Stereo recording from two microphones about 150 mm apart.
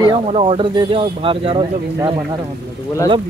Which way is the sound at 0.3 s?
35° right (ahead or behind).